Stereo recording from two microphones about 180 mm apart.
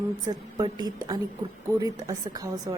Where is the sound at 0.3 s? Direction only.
25° right (ahead or behind).